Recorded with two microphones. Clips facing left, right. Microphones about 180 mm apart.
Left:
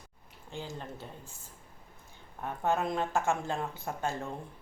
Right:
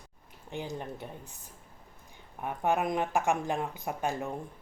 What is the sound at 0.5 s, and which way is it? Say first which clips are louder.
Speech: right 4 dB; 15° right (ahead or behind).